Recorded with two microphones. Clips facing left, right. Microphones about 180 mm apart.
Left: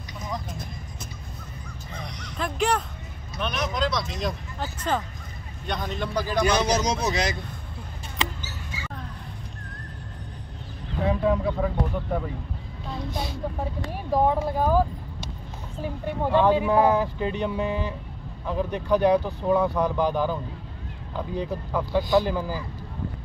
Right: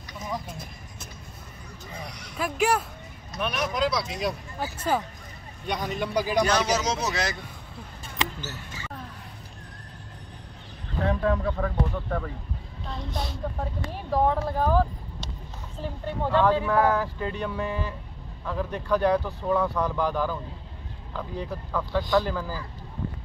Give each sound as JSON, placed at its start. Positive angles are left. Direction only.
{"t": 2.0, "sound": "a sound", "side_deg": -5}
{"t": 3.3, "sound": "speech", "side_deg": -5}
{"t": 5.7, "sound": "speech", "side_deg": -10}
{"t": 6.4, "sound": "speech", "side_deg": 15}
{"t": 11.1, "sound": "speech", "side_deg": 10}